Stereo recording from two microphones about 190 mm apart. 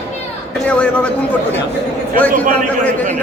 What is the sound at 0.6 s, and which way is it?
Speech, 5° left (ahead or behind).